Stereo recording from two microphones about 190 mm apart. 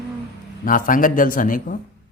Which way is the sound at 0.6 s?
45° left (ahead or behind).